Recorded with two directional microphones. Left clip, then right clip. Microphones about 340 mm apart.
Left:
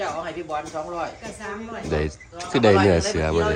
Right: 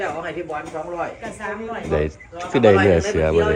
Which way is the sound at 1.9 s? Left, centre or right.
Centre.